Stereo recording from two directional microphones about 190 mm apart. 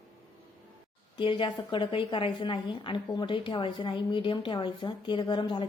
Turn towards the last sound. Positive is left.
turn(degrees=25)  # may be behind; listen again after turning